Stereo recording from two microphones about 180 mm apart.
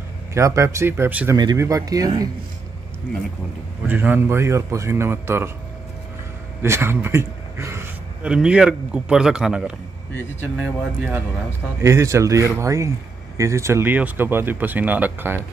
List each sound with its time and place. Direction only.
0.3 s speech: 15° right (ahead or behind)
3.8 s speech: 10° right (ahead or behind)
6.6 s a man's voice: 15° right (ahead or behind)